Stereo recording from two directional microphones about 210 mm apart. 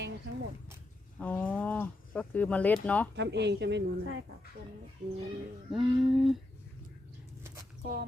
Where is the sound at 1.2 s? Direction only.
5° left (ahead or behind).